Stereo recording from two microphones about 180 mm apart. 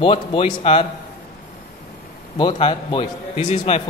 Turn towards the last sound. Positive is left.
turn(degrees=40)  # may be behind; listen again after turning